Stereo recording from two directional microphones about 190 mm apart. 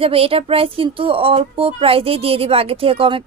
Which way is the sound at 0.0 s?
30° right (ahead or behind).